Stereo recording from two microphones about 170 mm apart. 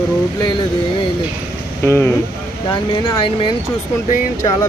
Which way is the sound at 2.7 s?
30° left (ahead or behind).